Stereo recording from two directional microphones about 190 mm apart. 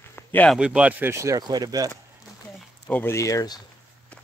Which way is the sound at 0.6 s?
5° right (ahead or behind).